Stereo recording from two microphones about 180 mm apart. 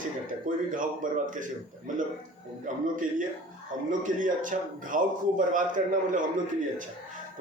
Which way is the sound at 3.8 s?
45° right (ahead or behind).